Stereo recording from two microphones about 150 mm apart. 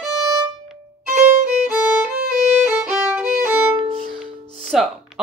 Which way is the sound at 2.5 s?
10° right (ahead or behind).